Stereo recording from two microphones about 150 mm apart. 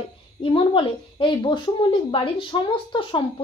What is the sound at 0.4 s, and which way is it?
A woman's voice, 35° left (ahead or behind).